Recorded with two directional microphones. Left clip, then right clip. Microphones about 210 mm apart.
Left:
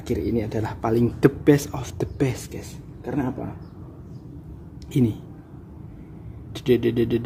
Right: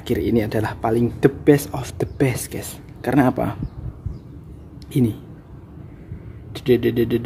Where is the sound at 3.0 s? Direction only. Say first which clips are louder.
Right 10 dB; 35° right (ahead or behind).